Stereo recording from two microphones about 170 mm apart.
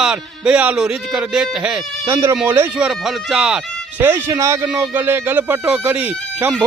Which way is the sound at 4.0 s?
15° right (ahead or behind).